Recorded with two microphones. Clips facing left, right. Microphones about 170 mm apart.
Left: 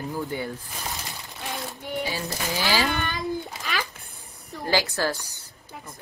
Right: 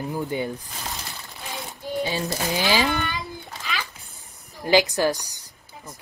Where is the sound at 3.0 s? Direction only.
40° left (ahead or behind).